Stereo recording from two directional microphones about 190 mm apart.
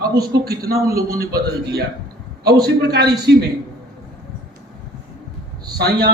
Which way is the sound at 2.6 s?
60° right (ahead or behind).